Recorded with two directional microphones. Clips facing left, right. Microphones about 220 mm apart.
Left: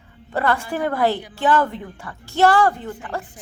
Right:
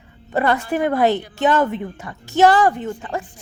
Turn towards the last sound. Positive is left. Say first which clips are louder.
# right 3 dB
turn(degrees=-20)  # may be behind; listen again after turning